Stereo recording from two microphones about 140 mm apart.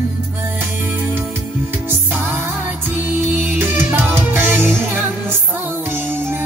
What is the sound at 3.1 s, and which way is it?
Music, 15° right (ahead or behind).